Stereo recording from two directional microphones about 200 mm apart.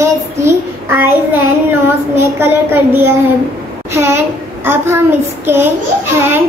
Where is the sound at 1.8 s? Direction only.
10° right (ahead or behind).